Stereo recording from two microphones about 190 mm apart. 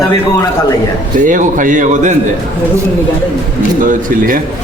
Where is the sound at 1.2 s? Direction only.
45° right (ahead or behind).